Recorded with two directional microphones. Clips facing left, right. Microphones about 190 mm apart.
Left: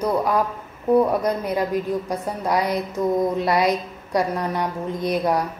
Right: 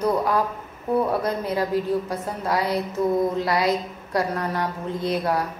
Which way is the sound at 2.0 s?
15° left (ahead or behind).